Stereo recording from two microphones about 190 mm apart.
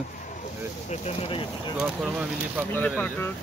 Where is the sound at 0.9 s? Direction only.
35° left (ahead or behind).